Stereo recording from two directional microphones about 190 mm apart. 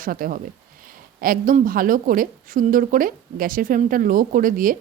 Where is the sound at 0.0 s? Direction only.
45° right (ahead or behind).